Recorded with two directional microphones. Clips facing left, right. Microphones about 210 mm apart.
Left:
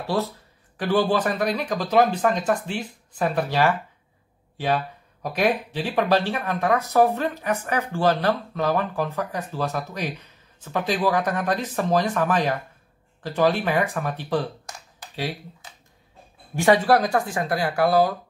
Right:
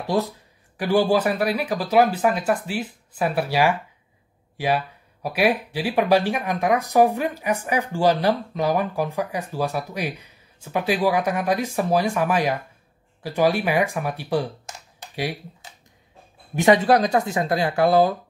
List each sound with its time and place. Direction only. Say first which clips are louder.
0.0 s speech: right 2 dB; 15° right (ahead or behind)
16.5 s speech: right 1 dB; 20° right (ahead or behind)